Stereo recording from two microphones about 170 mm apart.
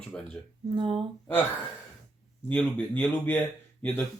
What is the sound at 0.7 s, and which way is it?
Speech, 30° right (ahead or behind).